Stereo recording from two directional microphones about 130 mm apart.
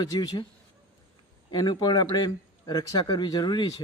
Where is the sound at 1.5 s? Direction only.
35° left (ahead or behind).